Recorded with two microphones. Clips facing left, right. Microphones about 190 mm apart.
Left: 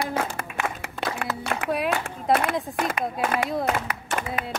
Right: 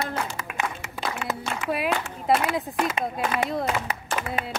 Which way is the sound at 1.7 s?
Centre (ahead or behind).